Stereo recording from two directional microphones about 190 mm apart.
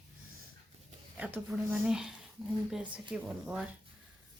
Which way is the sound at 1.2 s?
Centre (ahead or behind).